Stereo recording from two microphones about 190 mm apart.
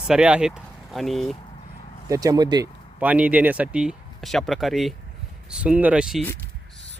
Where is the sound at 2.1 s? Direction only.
20° right (ahead or behind).